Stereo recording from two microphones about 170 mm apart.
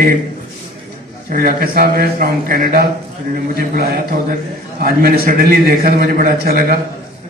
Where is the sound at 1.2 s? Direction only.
60° right (ahead or behind).